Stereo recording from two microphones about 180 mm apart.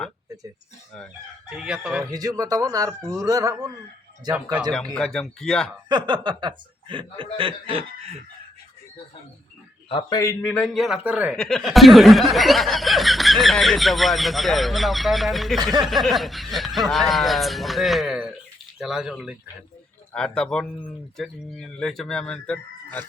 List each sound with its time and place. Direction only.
1.5 s speech: 5° right (ahead or behind)
2.0 s speech: 20° right (ahead or behind)
4.9 s speech: 5° left (ahead or behind)
5.9 s speech: 25° right (ahead or behind)
9.9 s a man's voice: 20° left (ahead or behind)
10.6 s speech: centre (ahead or behind)
11.3 s speech: 5° left (ahead or behind)